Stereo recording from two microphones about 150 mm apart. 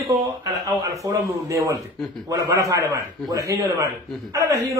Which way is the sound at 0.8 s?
20° right (ahead or behind).